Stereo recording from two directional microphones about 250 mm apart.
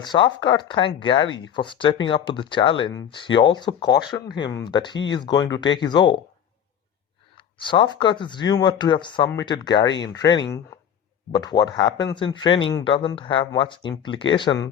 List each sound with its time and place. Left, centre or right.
0.0 s speech: centre
7.3 s speech: centre